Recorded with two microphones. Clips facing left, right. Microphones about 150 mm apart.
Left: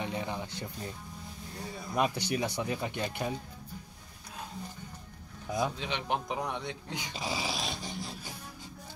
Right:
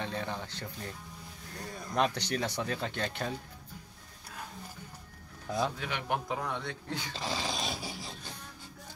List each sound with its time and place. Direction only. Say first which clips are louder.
0.0 s speech: left 1 dB; 15° left (ahead or behind)
5.5 s speech: left 1 dB; 20° left (ahead or behind); by 8.1 s 5° right (ahead or behind)